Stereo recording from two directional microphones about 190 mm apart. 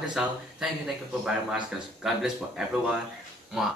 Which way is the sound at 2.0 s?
5° right (ahead or behind).